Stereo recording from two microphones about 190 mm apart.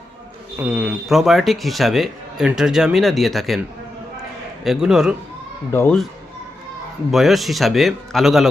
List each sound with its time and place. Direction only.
0.6 s a man's voice: 10° right (ahead or behind)
4.6 s a man's voice: centre (ahead or behind)
5.7 s speech: 10° left (ahead or behind)
7.1 s a man's voice: centre (ahead or behind)